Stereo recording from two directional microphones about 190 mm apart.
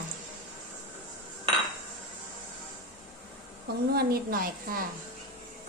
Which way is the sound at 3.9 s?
50° right (ahead or behind).